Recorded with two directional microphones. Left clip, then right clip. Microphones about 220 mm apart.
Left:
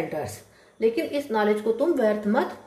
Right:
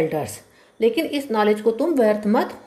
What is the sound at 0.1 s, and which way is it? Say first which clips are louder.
A woman's voice: right 5 dB; 35° right (ahead or behind).